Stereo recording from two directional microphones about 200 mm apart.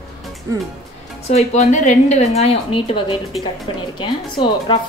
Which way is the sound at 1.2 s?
35° left (ahead or behind).